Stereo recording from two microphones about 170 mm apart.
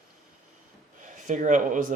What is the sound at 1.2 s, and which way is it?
Speech, 50° right (ahead or behind).